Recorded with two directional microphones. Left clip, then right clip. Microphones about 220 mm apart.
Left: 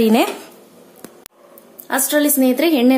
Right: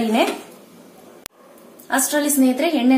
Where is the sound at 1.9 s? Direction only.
35° left (ahead or behind).